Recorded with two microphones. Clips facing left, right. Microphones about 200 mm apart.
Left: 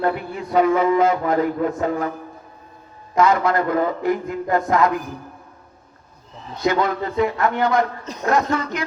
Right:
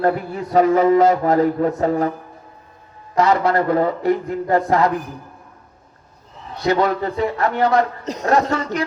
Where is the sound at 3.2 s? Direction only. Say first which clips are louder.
Right 1 dB; 35° right (ahead or behind).